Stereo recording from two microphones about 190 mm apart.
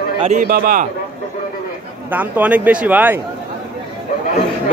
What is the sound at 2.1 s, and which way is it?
A man's voice, 10° right (ahead or behind).